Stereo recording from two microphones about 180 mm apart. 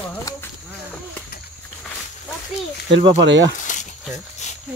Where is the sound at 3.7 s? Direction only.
45° left (ahead or behind).